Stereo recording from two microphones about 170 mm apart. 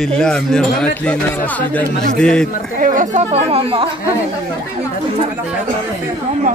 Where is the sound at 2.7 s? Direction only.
50° right (ahead or behind); by 3.9 s 35° right (ahead or behind).